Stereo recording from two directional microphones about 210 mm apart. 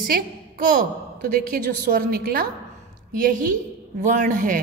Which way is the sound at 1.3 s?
40° right (ahead or behind).